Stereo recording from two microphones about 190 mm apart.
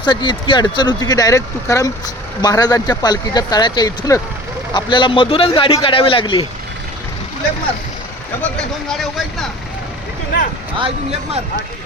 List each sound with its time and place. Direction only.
0.0 s speech: 25° left (ahead or behind)
8.4 s speech: 5° left (ahead or behind)
10.8 s speech: 30° right (ahead or behind)